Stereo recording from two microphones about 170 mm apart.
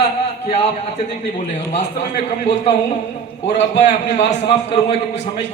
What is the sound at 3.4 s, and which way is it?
A man's voice, 40° left (ahead or behind).